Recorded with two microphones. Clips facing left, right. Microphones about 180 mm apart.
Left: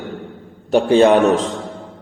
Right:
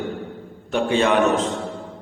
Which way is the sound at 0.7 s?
35° left (ahead or behind).